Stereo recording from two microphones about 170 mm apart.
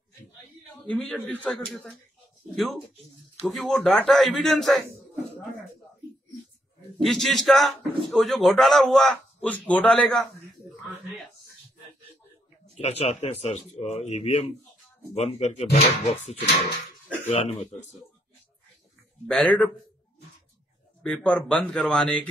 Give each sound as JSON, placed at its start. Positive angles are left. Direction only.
{"t": 0.8, "sound": "speech", "side_deg": 5}
{"t": 7.0, "sound": "speech", "side_deg": 0}
{"t": 12.7, "sound": "speech", "side_deg": 40}
{"t": 19.2, "sound": "speech", "side_deg": 5}
{"t": 21.0, "sound": "speech", "side_deg": 5}